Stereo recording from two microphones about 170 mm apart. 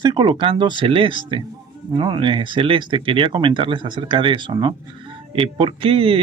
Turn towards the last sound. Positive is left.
turn(degrees=-35)  # may be behind; listen again after turning